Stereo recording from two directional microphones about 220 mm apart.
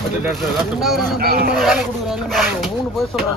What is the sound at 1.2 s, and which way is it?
Speech, 45° right (ahead or behind).